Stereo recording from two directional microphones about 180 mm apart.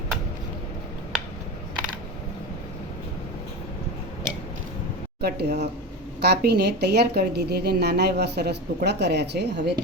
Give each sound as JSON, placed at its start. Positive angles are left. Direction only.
{"t": 5.2, "sound": "a woman's voice", "side_deg": -65}